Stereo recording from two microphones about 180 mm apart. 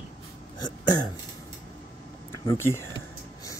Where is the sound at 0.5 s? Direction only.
20° left (ahead or behind).